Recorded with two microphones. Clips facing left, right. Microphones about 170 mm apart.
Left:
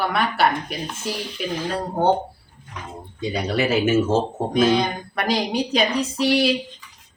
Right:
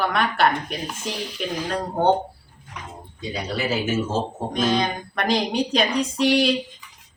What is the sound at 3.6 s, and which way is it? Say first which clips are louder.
Speech: left 5 dB; 60° left (ahead or behind).